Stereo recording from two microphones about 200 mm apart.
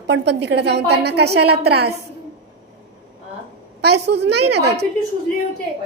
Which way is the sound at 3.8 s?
55° right (ahead or behind).